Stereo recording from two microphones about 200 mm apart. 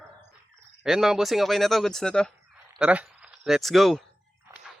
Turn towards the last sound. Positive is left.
turn(degrees=0)  # may be behind; listen again after turning